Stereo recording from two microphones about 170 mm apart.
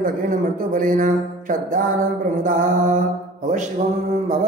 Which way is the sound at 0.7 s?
50° right (ahead or behind).